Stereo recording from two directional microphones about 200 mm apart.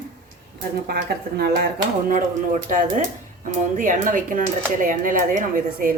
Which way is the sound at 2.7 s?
40° right (ahead or behind).